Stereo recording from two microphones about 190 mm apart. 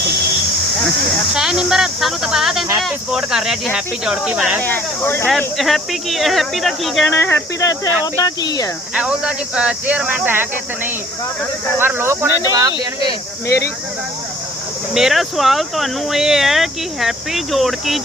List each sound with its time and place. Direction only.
1.3 s speech: 5° right (ahead or behind)
4.6 s speech: 10° left (ahead or behind)
5.5 s speech: centre (ahead or behind)
7.2 s speech: 10° left (ahead or behind)
9.0 s speech: 5° right (ahead or behind)
11.8 s speech: 10° right (ahead or behind)
14.9 s speech: centre (ahead or behind)